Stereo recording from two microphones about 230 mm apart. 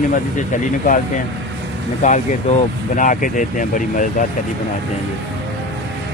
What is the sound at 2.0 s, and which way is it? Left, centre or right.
Speech, left.